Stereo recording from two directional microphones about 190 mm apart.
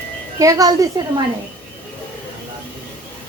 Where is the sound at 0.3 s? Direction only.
20° right (ahead or behind).